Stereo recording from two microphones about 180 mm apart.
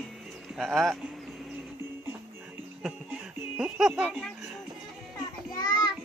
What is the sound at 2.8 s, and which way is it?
Music, 5° right (ahead or behind).